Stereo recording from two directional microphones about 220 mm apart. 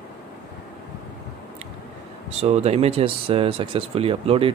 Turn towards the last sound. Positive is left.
turn(degrees=-25)  # may be behind; listen again after turning